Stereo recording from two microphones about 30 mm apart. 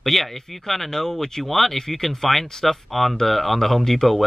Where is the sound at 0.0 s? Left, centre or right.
Centre.